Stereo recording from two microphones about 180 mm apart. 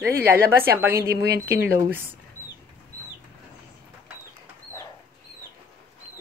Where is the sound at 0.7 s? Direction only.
15° right (ahead or behind).